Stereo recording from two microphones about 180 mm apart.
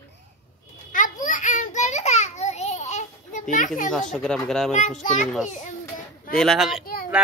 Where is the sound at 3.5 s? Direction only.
45° left (ahead or behind).